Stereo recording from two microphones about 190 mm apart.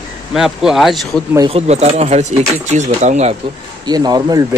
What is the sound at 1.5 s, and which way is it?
Speech, 35° right (ahead or behind).